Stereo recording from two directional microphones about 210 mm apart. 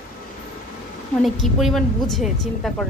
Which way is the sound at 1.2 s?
Centre (ahead or behind).